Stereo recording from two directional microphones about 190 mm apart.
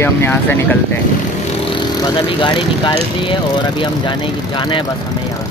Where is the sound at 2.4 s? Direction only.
25° left (ahead or behind).